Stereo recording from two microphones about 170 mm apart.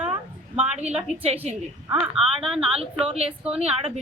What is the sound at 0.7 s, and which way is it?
Speech, 40° right (ahead or behind).